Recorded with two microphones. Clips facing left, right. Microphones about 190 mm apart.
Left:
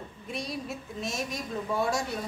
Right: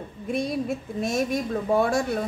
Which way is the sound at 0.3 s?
55° right (ahead or behind).